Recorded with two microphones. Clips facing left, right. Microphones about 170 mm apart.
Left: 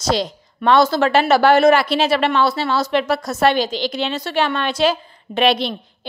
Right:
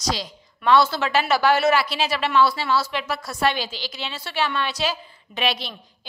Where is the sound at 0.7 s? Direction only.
45° left (ahead or behind).